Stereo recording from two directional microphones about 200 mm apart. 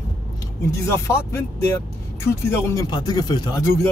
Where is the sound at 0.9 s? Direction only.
15° left (ahead or behind).